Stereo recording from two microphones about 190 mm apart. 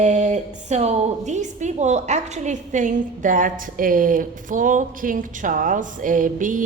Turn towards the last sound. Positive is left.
turn(degrees=-45)  # may be behind; listen again after turning